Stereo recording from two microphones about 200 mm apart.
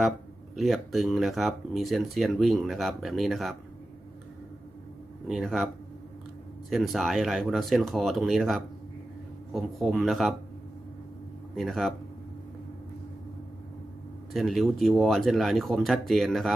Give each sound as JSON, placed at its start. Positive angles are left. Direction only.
{"t": 0.5, "sound": "speech", "side_deg": 0}
{"t": 5.3, "sound": "speech", "side_deg": 0}
{"t": 6.7, "sound": "speech", "side_deg": 0}
{"t": 11.5, "sound": "speech", "side_deg": 0}
{"t": 14.3, "sound": "speech", "side_deg": 0}